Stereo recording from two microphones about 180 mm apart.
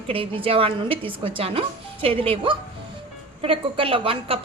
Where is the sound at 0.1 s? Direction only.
30° right (ahead or behind).